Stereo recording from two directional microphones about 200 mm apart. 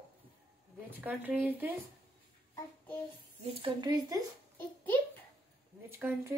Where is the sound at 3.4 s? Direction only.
25° right (ahead or behind).